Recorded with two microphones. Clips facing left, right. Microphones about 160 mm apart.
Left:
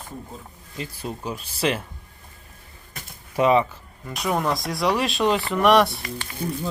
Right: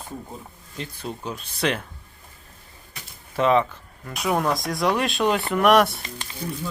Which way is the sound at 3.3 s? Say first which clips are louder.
Left 1 dB; 5° left (ahead or behind).